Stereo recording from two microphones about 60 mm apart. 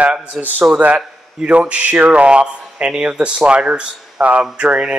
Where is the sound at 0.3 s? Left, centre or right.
Centre.